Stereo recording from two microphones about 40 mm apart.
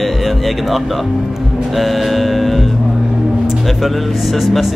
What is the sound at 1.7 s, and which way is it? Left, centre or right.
Music, centre.